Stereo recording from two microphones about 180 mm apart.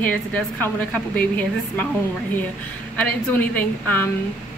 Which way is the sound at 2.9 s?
10° left (ahead or behind).